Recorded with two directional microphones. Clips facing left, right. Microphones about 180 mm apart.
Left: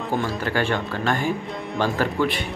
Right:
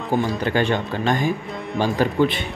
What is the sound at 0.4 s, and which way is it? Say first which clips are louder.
Speech: right 3 dB; 20° right (ahead or behind).